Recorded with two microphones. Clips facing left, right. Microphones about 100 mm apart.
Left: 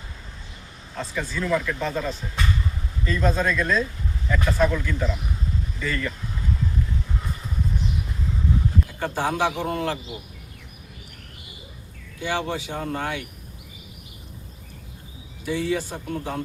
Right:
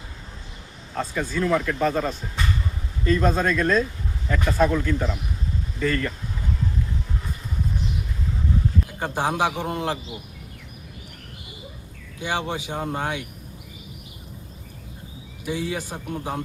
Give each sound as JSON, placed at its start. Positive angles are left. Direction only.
{"t": 0.9, "sound": "speech", "side_deg": -50}
{"t": 9.0, "sound": "a man's voice", "side_deg": -15}
{"t": 12.2, "sound": "a man's voice", "side_deg": -15}
{"t": 15.4, "sound": "a man's voice", "side_deg": -15}